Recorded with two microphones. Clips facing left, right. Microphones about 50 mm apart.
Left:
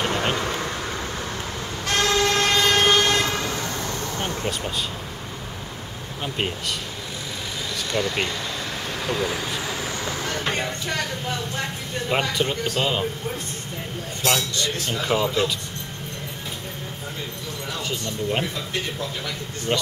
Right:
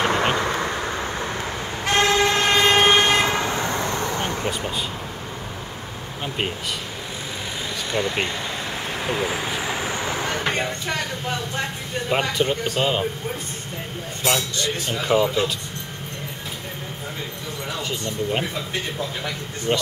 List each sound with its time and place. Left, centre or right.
0.0 s vehicle: right
6.2 s speech: centre
7.9 s speech: centre
8.9 s vehicle: centre
10.9 s speech: centre
19.7 s speech: centre